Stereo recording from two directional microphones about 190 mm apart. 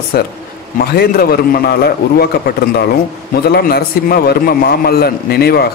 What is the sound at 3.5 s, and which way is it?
Speech, 55° left (ahead or behind).